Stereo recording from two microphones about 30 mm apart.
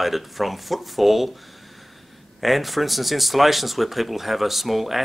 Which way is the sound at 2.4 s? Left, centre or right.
Centre.